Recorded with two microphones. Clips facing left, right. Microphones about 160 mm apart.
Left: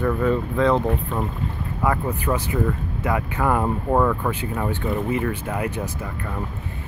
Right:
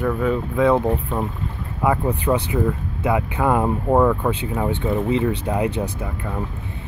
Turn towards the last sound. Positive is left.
turn(degrees=-15)  # may be behind; listen again after turning